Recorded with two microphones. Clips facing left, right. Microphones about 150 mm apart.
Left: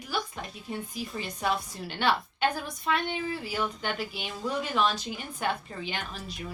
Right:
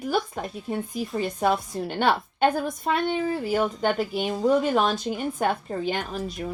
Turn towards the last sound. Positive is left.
turn(degrees=-45)  # may be behind; listen again after turning